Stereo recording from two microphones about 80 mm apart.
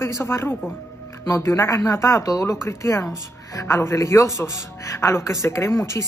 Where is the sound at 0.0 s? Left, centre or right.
Left.